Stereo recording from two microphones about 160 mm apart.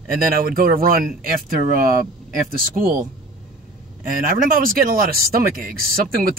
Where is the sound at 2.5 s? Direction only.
65° right (ahead or behind).